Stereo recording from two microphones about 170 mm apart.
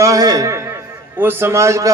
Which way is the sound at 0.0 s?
20° right (ahead or behind).